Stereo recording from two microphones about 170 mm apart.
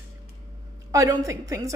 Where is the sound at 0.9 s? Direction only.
20° right (ahead or behind).